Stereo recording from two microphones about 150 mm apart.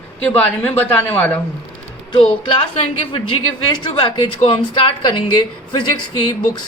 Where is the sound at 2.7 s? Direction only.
40° left (ahead or behind).